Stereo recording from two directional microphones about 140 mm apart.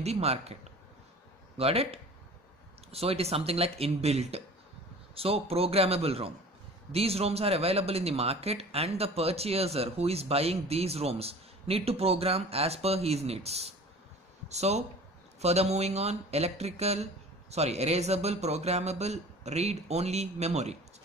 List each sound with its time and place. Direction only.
0.0 s speech: 50° right (ahead or behind)
1.6 s speech: 45° right (ahead or behind)